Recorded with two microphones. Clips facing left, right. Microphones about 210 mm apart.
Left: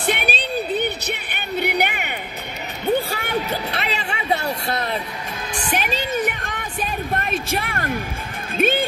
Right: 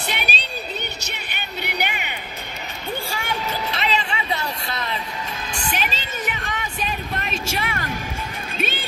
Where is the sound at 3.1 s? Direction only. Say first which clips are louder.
Left 3 dB; 60° left (ahead or behind).